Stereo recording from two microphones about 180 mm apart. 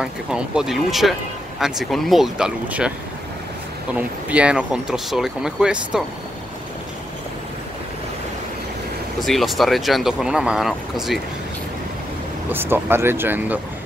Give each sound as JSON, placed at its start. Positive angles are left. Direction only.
{"t": 0.0, "sound": "speech", "side_deg": -5}
{"t": 3.9, "sound": "speech", "side_deg": -5}
{"t": 9.2, "sound": "speech", "side_deg": 0}
{"t": 12.4, "sound": "speech", "side_deg": -10}